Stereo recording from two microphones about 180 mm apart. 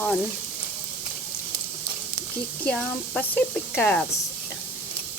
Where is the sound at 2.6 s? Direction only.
5° left (ahead or behind).